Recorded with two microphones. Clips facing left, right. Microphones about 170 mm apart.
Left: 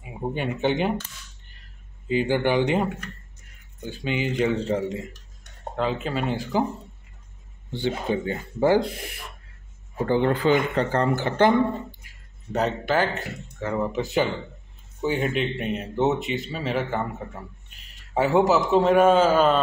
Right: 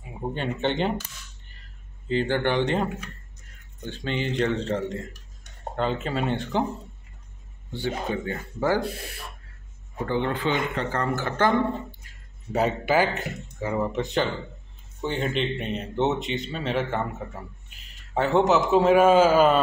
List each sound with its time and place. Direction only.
0.0 s speech: 10° left (ahead or behind)
2.0 s speech: 10° left (ahead or behind)
7.7 s speech: 20° left (ahead or behind)
10.0 s speech: 35° left (ahead or behind)
11.1 s speech: 20° left (ahead or behind)
12.5 s speech: 10° right (ahead or behind)
13.9 s speech: 5° left (ahead or behind)
18.1 s speech: 5° left (ahead or behind)